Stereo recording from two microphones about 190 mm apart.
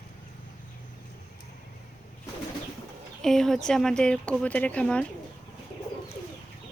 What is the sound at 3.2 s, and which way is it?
Speech, centre (ahead or behind).